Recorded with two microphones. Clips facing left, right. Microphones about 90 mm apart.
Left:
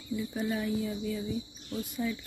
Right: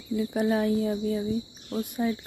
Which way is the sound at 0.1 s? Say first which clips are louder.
Right 7 dB; 70° right (ahead or behind).